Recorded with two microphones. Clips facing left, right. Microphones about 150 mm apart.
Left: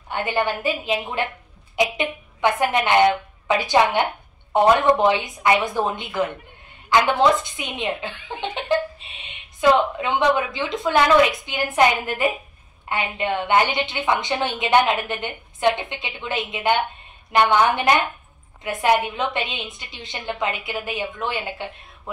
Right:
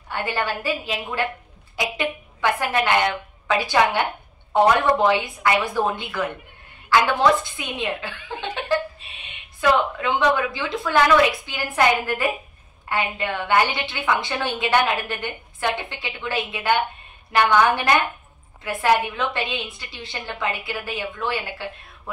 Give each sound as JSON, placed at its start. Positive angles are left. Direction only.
{"t": 0.1, "sound": "a woman's voice", "side_deg": 20}